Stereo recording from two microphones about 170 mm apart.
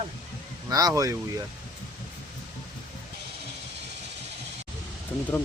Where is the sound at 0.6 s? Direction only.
20° right (ahead or behind).